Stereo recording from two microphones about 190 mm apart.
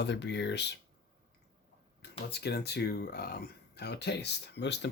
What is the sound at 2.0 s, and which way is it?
Speech, 60° left (ahead or behind).